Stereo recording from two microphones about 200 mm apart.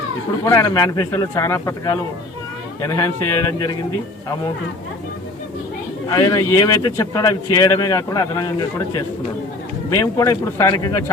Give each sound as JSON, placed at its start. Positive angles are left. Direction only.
{"t": 0.4, "sound": "a man's voice", "side_deg": 15}
{"t": 6.1, "sound": "a man's voice", "side_deg": 15}